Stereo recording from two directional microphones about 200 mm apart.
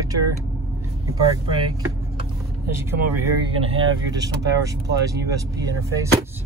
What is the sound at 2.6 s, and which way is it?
Speech, 15° right (ahead or behind).